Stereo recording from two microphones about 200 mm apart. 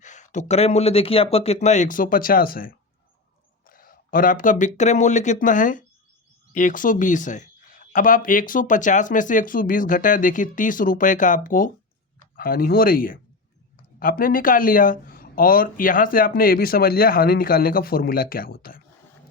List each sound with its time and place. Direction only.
0.0 s speech: 35° left (ahead or behind)